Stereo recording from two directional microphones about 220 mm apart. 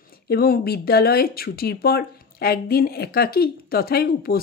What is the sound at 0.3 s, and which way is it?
Speech, 45° left (ahead or behind).